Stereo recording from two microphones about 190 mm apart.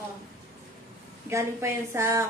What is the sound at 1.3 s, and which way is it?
Speech, 15° right (ahead or behind).